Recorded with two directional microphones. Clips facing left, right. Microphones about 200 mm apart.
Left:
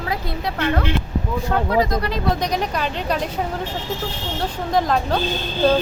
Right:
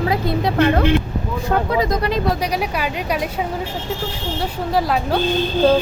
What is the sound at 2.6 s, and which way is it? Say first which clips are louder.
Speech: right 1 dB; 10° right (ahead or behind).